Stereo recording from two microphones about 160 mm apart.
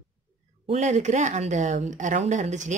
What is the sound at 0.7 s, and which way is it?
A woman's voice, 45° right (ahead or behind).